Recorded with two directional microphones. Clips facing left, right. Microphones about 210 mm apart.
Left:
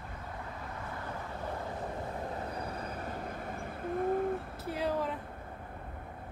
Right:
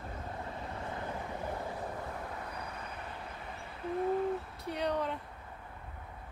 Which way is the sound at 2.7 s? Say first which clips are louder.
Left 5 dB; 40° left (ahead or behind).